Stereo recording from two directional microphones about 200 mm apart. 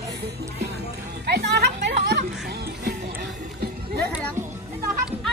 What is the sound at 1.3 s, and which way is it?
Music, 55° right (ahead or behind).